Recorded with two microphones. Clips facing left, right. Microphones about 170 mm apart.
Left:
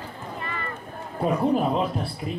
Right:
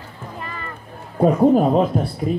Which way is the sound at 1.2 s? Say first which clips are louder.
Right 8 dB; 40° right (ahead or behind).